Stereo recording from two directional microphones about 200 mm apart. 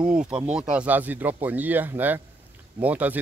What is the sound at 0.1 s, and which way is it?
Speech, 5° right (ahead or behind).